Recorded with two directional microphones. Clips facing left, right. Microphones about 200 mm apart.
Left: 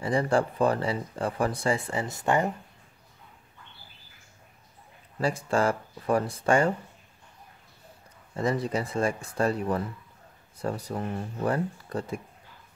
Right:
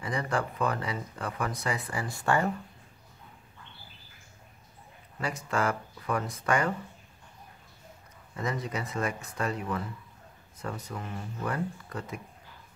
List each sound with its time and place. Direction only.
0.0 s speech: 30° left (ahead or behind)
5.2 s speech: 30° left (ahead or behind)
8.4 s speech: 30° left (ahead or behind)